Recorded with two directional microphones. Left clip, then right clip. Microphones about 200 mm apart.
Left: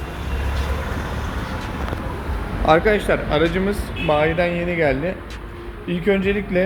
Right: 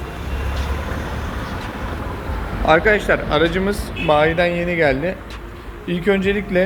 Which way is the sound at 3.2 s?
5° left (ahead or behind).